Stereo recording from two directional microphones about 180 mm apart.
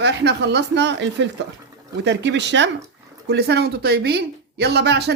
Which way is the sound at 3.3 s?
65° right (ahead or behind).